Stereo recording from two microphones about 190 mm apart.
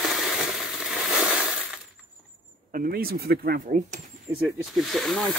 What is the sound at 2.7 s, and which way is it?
Speech, 50° right (ahead or behind).